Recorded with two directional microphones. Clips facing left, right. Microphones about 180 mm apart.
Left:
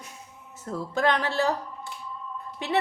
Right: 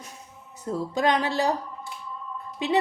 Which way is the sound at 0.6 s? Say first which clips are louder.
Right 1 dB; 15° right (ahead or behind).